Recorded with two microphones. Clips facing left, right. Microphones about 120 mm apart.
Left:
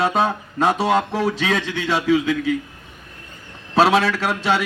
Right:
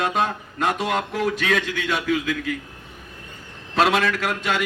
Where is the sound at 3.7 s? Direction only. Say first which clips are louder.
Left 4 dB; 30° left (ahead or behind).